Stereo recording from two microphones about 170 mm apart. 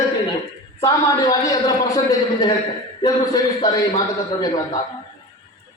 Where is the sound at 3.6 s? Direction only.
20° left (ahead or behind).